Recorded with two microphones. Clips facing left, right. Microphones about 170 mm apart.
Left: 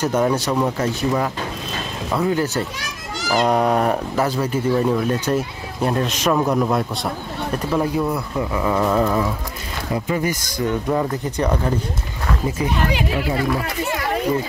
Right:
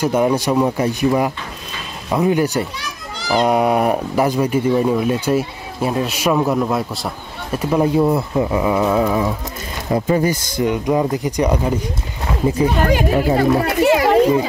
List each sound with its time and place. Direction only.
0.0 s speech: 10° right (ahead or behind)
7.8 s speech: 25° right (ahead or behind)
8.6 s speech: 10° right (ahead or behind)
9.9 s speech: 35° right (ahead or behind)
10.6 s speech: 15° right (ahead or behind)
12.7 s speech: 45° right (ahead or behind)
13.7 s children playing: 75° right (ahead or behind)